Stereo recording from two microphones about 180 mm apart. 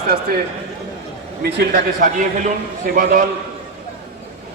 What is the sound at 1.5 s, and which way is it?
A man's voice, 50° right (ahead or behind).